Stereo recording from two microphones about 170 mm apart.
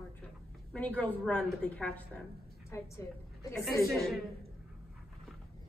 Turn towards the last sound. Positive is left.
turn(degrees=0)  # may be behind; listen again after turning